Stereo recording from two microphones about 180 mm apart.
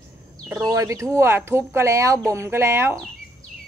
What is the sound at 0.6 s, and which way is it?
A woman's voice, 20° right (ahead or behind).